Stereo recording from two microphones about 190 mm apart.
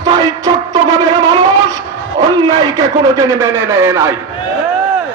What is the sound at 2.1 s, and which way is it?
A man's voice, 20° right (ahead or behind).